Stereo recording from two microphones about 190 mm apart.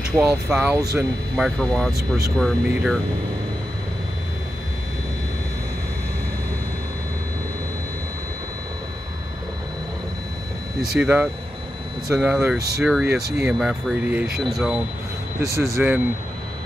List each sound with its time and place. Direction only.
0.2 s speech: 5° right (ahead or behind)
11.0 s speech: 5° right (ahead or behind)
15.5 s speech: 15° right (ahead or behind)